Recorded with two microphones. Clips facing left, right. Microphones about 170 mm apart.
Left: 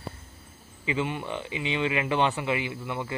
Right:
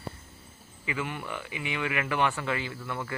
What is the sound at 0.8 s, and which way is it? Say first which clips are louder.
Speech: left 5 dB; 20° left (ahead or behind).